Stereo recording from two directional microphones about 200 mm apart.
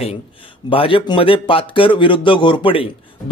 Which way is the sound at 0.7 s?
25° left (ahead or behind).